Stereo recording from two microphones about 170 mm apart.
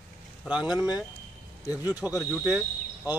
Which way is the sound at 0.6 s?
25° left (ahead or behind).